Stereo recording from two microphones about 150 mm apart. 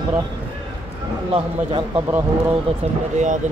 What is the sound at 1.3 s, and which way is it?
Speech, 30° right (ahead or behind).